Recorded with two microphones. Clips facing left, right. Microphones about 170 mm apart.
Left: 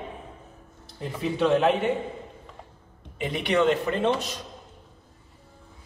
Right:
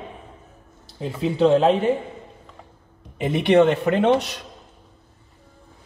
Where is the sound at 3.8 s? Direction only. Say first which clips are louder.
Right 6 dB; 65° right (ahead or behind).